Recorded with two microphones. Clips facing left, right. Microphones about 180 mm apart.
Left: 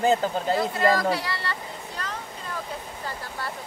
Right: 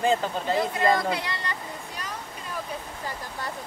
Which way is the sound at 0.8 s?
20° right (ahead or behind).